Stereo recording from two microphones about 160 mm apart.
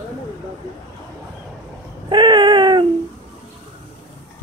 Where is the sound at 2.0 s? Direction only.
30° right (ahead or behind).